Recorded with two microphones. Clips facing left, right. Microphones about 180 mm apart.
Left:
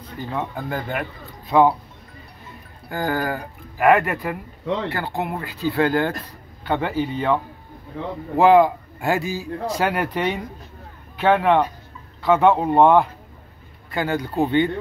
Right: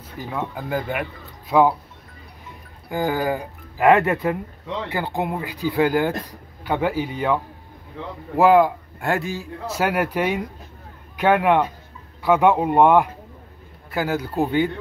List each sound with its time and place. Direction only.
0.4 s speech: 10° right (ahead or behind)
2.9 s speech: 15° right (ahead or behind)
8.4 s a man's voice: centre (ahead or behind)